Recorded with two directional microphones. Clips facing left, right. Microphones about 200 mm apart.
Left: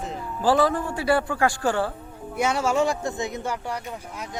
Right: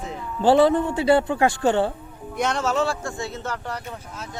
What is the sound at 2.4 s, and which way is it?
Speech, 10° left (ahead or behind).